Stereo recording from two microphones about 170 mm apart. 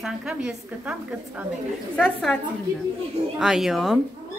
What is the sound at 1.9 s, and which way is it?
Speech, centre (ahead or behind).